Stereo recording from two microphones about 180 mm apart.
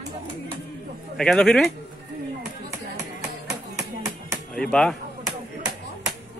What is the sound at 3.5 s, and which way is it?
Music, 15° right (ahead or behind).